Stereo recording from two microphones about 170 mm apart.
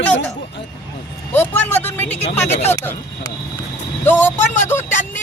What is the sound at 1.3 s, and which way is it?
Speech, 10° left (ahead or behind).